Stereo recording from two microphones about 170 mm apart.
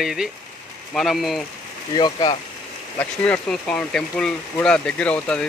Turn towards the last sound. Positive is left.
turn(degrees=5)  # may be behind; listen again after turning